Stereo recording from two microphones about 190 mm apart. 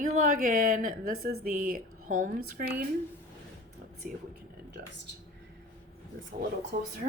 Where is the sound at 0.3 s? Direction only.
45° right (ahead or behind).